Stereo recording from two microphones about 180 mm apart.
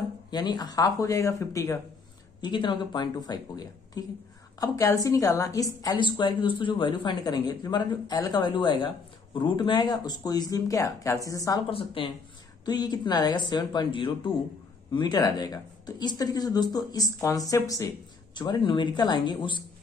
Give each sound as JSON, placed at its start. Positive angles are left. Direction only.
{"t": 0.3, "sound": "speech", "side_deg": 25}
{"t": 11.7, "sound": "speech", "side_deg": 30}